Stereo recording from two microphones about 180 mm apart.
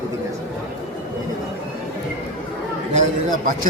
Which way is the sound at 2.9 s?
50° right (ahead or behind).